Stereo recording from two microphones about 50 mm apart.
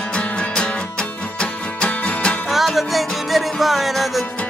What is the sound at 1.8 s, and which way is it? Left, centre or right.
Music, centre.